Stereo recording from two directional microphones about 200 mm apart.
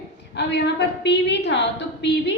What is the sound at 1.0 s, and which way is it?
A woman's voice, 60° left (ahead or behind).